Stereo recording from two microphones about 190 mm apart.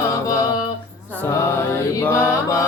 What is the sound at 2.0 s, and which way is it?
Mantra, 15° left (ahead or behind).